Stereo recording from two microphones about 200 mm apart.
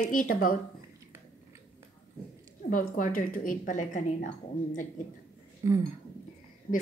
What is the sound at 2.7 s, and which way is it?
Speech, 40° left (ahead or behind).